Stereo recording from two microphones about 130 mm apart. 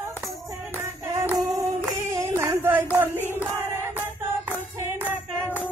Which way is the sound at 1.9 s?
25° right (ahead or behind).